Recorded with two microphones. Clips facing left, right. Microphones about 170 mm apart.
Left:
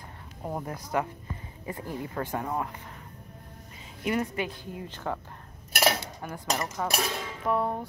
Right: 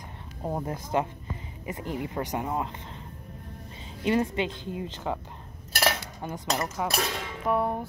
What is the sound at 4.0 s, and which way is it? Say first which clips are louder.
Speech: right 3 dB; 25° right (ahead or behind).